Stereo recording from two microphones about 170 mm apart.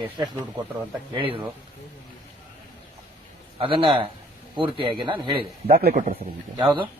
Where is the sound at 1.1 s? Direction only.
30° right (ahead or behind).